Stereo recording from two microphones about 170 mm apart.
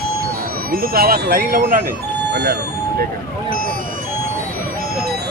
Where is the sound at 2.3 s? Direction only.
70° right (ahead or behind).